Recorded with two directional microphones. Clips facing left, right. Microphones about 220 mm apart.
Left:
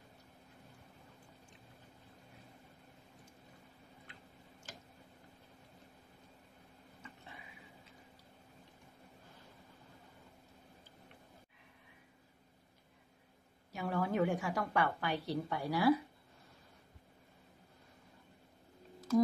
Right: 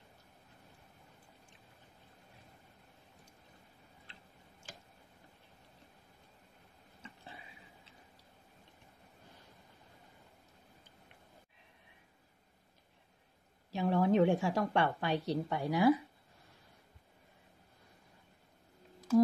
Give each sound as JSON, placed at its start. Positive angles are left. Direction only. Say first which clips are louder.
{"t": 13.7, "sound": "a woman's voice", "louder": "right 6 dB", "side_deg": -25}